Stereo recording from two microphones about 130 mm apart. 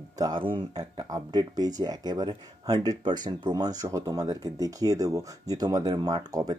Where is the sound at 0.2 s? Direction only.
40° right (ahead or behind).